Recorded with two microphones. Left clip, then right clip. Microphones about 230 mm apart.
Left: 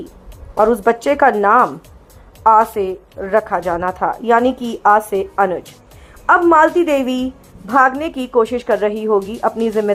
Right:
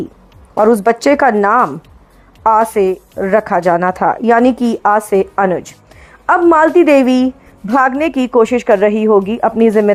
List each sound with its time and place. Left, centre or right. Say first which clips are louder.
0.5 s a woman's voice: right 3 dB; right